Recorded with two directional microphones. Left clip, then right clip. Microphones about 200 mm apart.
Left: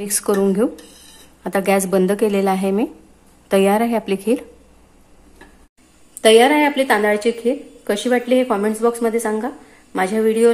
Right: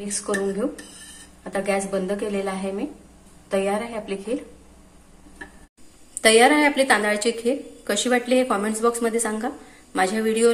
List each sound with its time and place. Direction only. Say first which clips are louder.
0.0 s a woman's voice: left 7 dB; 55° left (ahead or behind)
6.2 s a woman's voice: left 4 dB; 30° left (ahead or behind)